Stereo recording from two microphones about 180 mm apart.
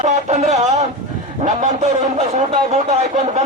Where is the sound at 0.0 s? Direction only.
40° right (ahead or behind).